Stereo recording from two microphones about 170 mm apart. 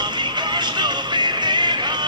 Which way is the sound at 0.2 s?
25° right (ahead or behind).